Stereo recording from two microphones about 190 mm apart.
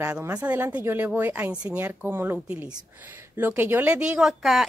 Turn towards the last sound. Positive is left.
turn(degrees=0)  # may be behind; listen again after turning